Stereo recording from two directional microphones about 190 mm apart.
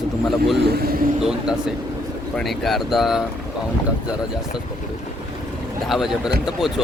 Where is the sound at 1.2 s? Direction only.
Centre (ahead or behind).